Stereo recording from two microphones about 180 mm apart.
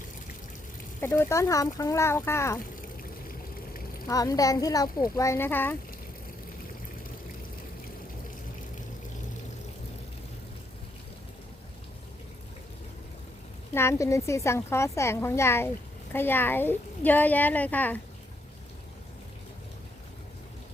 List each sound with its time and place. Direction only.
1.0 s a woman's voice: 15° left (ahead or behind)
4.0 s a woman's voice: 20° left (ahead or behind)
13.7 s a woman's voice: 15° left (ahead or behind)